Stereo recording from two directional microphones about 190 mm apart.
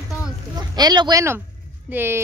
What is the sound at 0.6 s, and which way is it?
A child's voice, 20° right (ahead or behind).